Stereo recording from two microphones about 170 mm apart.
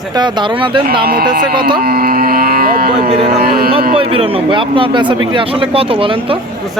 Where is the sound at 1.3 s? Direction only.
60° right (ahead or behind).